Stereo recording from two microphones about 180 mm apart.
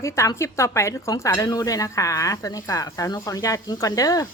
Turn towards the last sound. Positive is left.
turn(degrees=20)  # may be behind; listen again after turning